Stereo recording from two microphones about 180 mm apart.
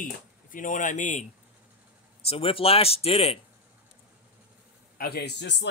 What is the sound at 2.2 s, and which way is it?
Speech, 30° left (ahead or behind).